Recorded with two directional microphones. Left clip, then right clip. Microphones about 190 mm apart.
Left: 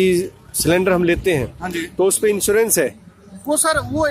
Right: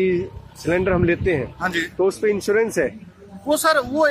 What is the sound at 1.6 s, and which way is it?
Speech, 10° right (ahead or behind).